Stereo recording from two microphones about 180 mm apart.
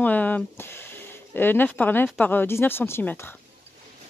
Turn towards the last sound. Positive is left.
turn(degrees=15)  # may be behind; listen again after turning